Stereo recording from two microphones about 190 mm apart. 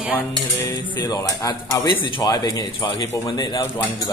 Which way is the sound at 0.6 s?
20° left (ahead or behind).